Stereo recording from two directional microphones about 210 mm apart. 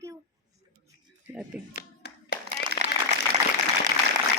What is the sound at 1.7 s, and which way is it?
Clapping, 55° left (ahead or behind).